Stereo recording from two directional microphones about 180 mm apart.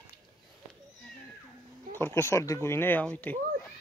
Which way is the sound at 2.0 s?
15° left (ahead or behind).